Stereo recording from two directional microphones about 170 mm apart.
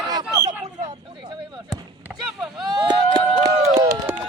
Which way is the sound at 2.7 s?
25° right (ahead or behind).